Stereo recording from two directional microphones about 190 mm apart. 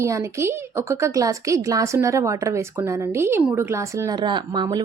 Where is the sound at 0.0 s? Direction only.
15° right (ahead or behind).